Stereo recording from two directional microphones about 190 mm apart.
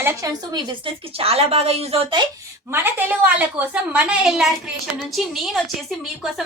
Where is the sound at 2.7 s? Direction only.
10° right (ahead or behind).